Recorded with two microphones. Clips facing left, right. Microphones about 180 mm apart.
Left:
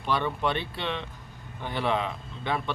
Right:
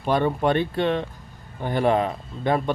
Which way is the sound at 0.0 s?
45° right (ahead or behind).